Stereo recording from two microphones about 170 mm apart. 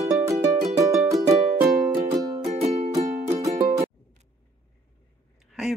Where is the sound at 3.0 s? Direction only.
40° right (ahead or behind).